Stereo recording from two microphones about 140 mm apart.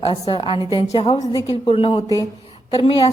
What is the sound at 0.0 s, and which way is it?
A woman's voice, 40° left (ahead or behind).